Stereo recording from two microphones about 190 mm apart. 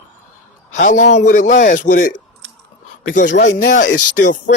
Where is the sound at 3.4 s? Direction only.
40° left (ahead or behind).